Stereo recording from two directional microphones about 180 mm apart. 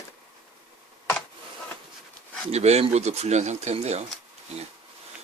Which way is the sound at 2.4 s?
35° right (ahead or behind).